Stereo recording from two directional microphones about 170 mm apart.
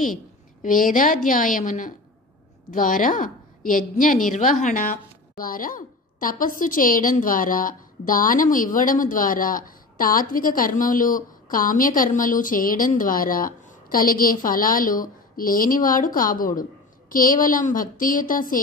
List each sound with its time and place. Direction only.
0.0 s a woman's voice: 50° left (ahead or behind)